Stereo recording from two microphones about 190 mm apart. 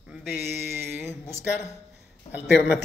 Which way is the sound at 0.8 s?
15° right (ahead or behind).